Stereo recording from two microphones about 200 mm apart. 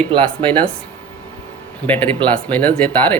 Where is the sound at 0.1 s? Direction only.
25° right (ahead or behind).